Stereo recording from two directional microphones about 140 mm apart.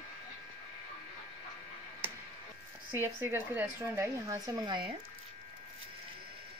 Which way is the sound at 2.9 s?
15° right (ahead or behind).